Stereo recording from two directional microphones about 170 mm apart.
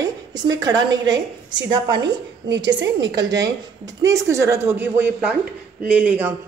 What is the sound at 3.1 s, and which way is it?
A woman's voice, 25° right (ahead or behind).